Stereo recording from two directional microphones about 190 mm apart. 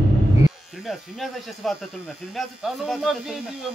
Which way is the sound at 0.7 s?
Centre (ahead or behind).